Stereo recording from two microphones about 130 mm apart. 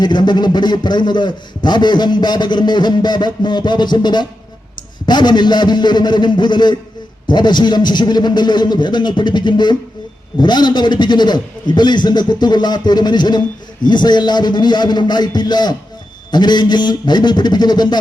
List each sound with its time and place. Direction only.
0.0 s a man's voice: 35° left (ahead or behind)